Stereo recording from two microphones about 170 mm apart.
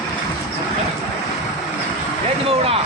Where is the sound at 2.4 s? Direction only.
35° right (ahead or behind).